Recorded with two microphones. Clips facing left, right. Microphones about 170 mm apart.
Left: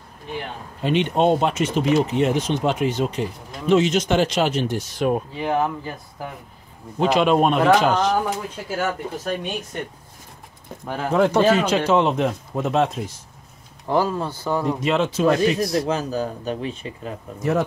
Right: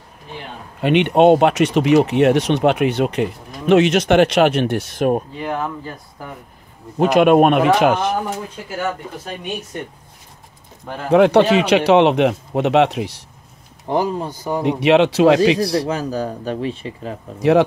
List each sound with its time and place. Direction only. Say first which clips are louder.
0.7 s speech: right 6 dB; 65° right (ahead or behind); by 5.2 s 50° right (ahead or behind)
5.4 s speech: left 2 dB; 15° left (ahead or behind)
7.0 s speech: right 5 dB; 55° right (ahead or behind)
11.1 s speech: right 5 dB; 70° right (ahead or behind)
13.8 s speech: right 1 dB; 20° right (ahead or behind)
14.6 s speech: right 9 dB; 75° right (ahead or behind)
15.6 s speech: right 2 dB; 35° right (ahead or behind)
17.4 s speech: right 8 dB; 80° right